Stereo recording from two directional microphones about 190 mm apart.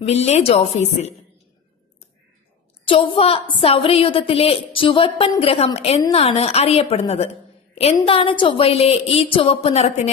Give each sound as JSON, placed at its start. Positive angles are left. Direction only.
{"t": 0.0, "sound": "a woman's voice", "side_deg": 35}
{"t": 2.9, "sound": "a woman's voice", "side_deg": 30}